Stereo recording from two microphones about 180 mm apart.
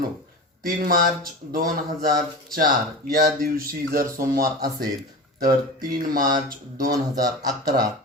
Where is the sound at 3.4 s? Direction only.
55° right (ahead or behind).